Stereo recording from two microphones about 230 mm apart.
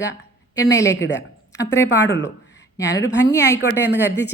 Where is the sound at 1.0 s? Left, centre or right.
Left.